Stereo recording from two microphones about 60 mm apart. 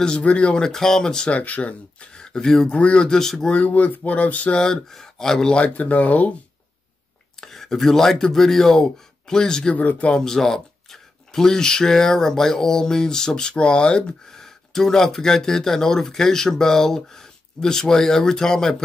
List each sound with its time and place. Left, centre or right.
0.0 s speech: centre
0.7 s speech: centre
3.5 s speech: left
4.6 s speech: centre
5.6 s speech: left
7.3 s speech: centre
9.8 s speech: left
10.2 s speech: centre